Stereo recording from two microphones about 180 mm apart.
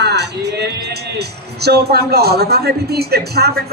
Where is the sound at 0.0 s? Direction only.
65° right (ahead or behind).